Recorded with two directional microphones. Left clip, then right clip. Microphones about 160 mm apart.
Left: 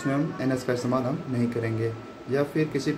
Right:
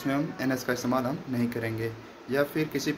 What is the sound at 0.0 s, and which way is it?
A man's voice, 15° left (ahead or behind).